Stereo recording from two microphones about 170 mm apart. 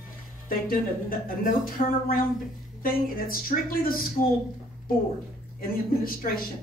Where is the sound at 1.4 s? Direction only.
55° left (ahead or behind).